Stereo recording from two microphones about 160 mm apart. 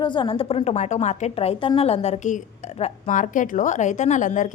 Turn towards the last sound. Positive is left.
turn(degrees=50)  # may be behind; listen again after turning